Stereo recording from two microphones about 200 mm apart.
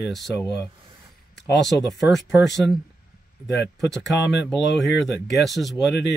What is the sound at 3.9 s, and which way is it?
Speech, centre (ahead or behind).